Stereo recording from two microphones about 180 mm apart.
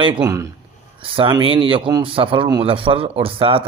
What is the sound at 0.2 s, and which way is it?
Speech, 15° right (ahead or behind).